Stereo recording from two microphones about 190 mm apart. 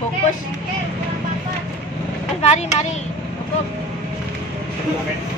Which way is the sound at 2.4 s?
35° left (ahead or behind).